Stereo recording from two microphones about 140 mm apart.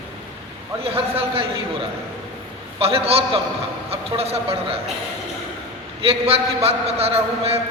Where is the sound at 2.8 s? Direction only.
45° right (ahead or behind).